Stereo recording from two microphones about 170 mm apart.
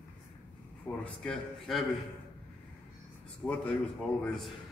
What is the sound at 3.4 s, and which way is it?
A man's voice, 5° left (ahead or behind).